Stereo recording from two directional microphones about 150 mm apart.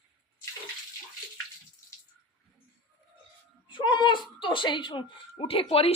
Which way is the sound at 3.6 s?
30° left (ahead or behind).